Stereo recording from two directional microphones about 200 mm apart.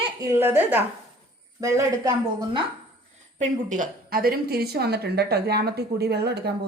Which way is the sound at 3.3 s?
40° right (ahead or behind).